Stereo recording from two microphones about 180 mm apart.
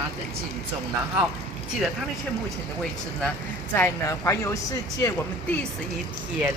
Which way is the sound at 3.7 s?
15° left (ahead or behind).